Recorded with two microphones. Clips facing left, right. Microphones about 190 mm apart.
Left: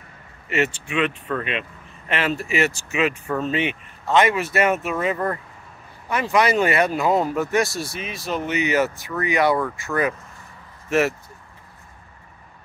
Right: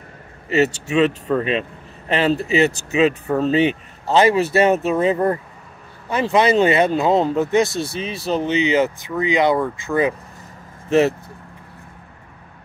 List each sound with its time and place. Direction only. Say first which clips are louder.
0.9 s speech: right 7 dB; 35° right (ahead or behind); by 10.1 s 20° right (ahead or behind)
10.9 s speech: right 5 dB; 30° right (ahead or behind)